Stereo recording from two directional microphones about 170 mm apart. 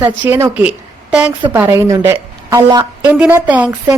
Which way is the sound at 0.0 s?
15° right (ahead or behind).